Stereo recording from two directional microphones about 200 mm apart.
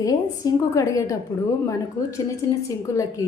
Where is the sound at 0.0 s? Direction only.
15° left (ahead or behind).